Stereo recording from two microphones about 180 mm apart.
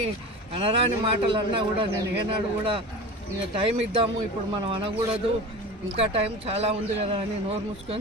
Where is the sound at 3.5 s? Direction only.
30° right (ahead or behind).